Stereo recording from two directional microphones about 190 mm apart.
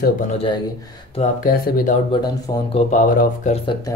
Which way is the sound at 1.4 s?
50° left (ahead or behind).